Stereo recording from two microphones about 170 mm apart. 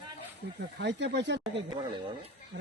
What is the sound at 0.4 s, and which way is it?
Speech, 90° right.